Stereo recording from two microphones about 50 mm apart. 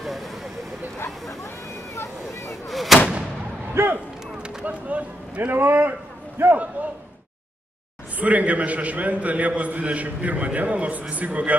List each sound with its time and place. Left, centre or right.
0.0 s vehicle: centre
2.0 s vehicle: left
2.7 s artillery fire: centre
3.7 s a sound: right
4.6 s a sound: right
5.5 s a man's voice: right
8.2 s a man's voice: right